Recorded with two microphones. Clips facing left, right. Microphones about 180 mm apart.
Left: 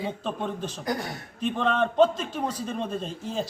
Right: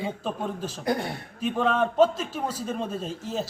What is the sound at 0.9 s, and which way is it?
Speech, 30° right (ahead or behind).